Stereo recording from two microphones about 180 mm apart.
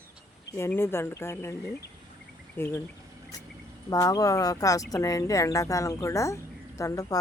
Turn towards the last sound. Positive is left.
turn(degrees=20)  # may be behind; listen again after turning